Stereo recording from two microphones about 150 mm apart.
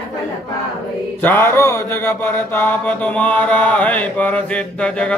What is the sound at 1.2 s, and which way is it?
Mantra, 15° left (ahead or behind).